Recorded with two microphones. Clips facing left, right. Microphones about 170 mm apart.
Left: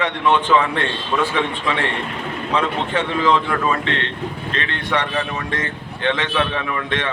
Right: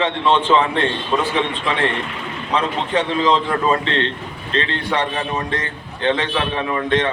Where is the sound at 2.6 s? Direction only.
30° right (ahead or behind).